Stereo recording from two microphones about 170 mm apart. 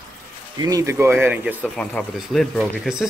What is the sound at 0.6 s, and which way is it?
Speech, 20° right (ahead or behind).